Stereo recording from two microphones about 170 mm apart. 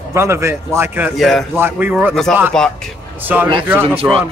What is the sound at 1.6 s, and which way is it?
Speech, 10° right (ahead or behind).